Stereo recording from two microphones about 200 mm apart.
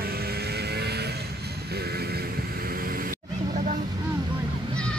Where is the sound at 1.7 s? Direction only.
50° right (ahead or behind).